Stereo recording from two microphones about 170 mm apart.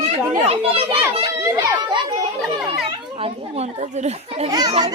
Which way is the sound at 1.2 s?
25° right (ahead or behind).